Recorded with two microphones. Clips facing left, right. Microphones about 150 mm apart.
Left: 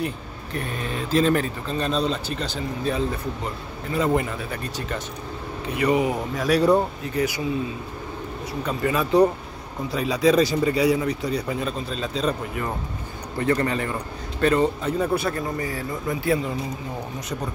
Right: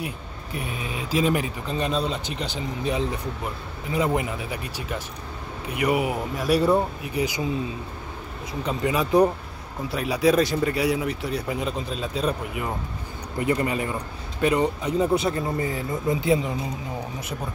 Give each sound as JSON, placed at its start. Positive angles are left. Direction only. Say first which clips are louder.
{"t": 0.0, "sound": "speech", "louder": "left 4 dB", "side_deg": -10}
{"t": 8.6, "sound": "speech", "louder": "even", "side_deg": -15}